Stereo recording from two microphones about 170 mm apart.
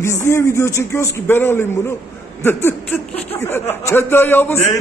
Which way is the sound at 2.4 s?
10° left (ahead or behind).